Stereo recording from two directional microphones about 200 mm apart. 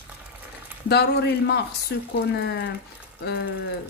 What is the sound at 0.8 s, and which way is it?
Speech, 55° left (ahead or behind).